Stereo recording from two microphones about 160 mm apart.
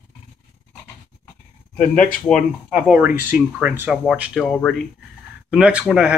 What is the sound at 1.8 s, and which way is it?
Speech, 55° left (ahead or behind).